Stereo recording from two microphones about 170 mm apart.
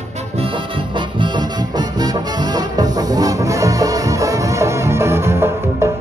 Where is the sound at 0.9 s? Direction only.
25° right (ahead or behind).